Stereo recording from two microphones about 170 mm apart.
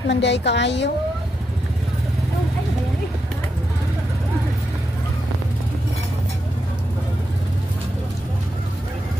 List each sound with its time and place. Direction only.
0.1 s a woman's voice: 90° left